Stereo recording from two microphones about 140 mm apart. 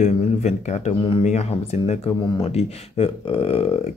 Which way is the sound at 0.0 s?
55° left (ahead or behind).